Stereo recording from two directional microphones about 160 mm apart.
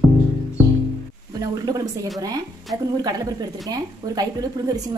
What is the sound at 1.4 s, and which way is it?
A woman's voice, 20° right (ahead or behind).